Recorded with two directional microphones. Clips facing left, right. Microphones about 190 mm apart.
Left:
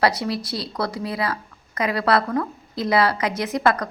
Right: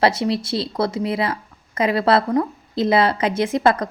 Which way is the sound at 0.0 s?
25° right (ahead or behind).